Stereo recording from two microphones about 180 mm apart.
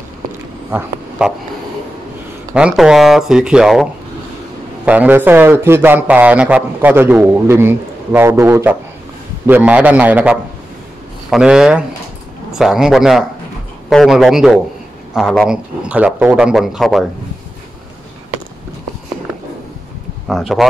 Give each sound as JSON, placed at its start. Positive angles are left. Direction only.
{"t": 0.7, "sound": "speech", "side_deg": -10}
{"t": 2.5, "sound": "a man's voice", "side_deg": -5}
{"t": 4.8, "sound": "a man's voice", "side_deg": -10}
{"t": 20.2, "sound": "a man's voice", "side_deg": 0}